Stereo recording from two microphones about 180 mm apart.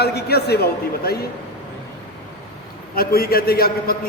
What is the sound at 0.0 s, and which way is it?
A man's voice, 60° left (ahead or behind).